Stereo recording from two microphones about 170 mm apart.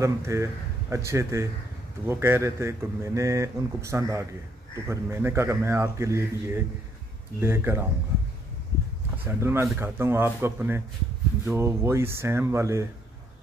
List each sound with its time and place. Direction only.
0.0 s speech: 15° right (ahead or behind)
9.2 s speech: 15° right (ahead or behind)